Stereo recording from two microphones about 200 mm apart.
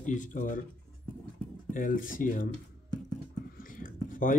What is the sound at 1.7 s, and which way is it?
Speech, 40° left (ahead or behind).